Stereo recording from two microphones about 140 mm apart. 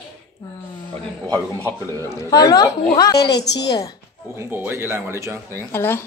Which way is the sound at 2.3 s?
25° left (ahead or behind).